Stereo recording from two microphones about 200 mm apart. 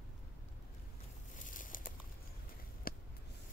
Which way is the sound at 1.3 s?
40° left (ahead or behind).